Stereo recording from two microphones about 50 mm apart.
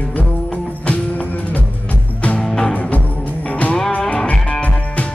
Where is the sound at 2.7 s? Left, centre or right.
Left.